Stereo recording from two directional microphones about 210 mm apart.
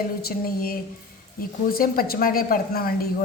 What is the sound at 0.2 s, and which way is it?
A woman's voice, 45° left (ahead or behind).